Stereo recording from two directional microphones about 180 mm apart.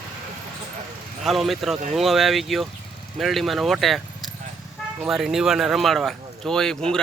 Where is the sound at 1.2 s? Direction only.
Centre (ahead or behind).